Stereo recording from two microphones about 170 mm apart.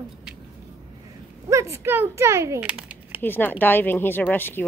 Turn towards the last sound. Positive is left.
turn(degrees=10)  # may be behind; listen again after turning